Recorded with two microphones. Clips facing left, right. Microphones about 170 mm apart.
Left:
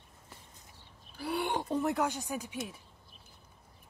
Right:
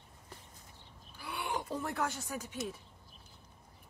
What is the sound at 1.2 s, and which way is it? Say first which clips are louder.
Speech: left 6 dB; 30° left (ahead or behind).